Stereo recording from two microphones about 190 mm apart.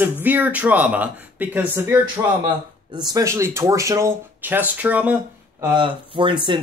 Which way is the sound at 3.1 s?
15° right (ahead or behind).